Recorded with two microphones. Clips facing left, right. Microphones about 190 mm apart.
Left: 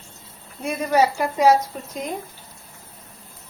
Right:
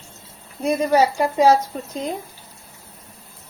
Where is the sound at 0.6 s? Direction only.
35° right (ahead or behind).